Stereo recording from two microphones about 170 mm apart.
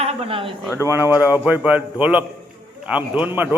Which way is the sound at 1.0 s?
20° left (ahead or behind).